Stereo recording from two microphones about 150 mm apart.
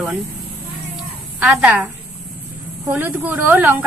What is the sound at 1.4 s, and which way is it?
Speech, 10° right (ahead or behind).